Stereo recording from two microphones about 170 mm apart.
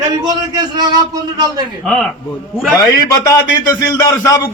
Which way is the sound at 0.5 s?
25° right (ahead or behind).